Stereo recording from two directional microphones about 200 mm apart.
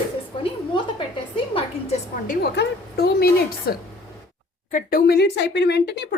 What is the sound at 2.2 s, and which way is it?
Speech, 50° left (ahead or behind).